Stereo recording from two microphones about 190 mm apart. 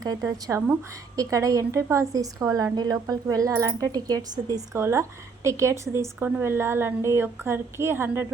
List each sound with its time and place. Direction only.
0.3 s a woman's voice: 15° right (ahead or behind)